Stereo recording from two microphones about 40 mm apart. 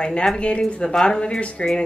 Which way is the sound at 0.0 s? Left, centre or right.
Left.